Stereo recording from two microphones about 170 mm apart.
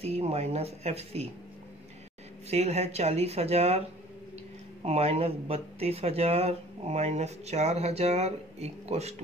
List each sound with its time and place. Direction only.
0.0 s speech: 35° right (ahead or behind)
2.5 s speech: 40° right (ahead or behind)
4.8 s speech: 40° right (ahead or behind)